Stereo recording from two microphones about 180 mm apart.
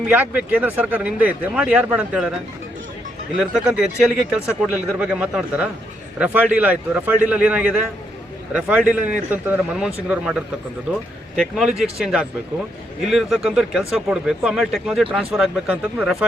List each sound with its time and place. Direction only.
0.1 s speech: 10° right (ahead or behind)
3.3 s speech: 5° right (ahead or behind)